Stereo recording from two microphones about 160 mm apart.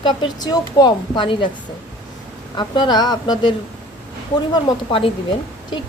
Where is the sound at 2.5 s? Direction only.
30° left (ahead or behind).